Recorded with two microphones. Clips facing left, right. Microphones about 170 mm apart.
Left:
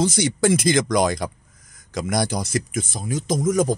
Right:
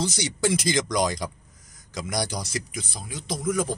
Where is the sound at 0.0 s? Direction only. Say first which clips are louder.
Left 6 dB; 50° left (ahead or behind).